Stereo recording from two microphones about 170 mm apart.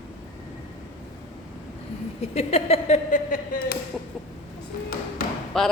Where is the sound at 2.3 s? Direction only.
35° left (ahead or behind); by 3.7 s 55° left (ahead or behind).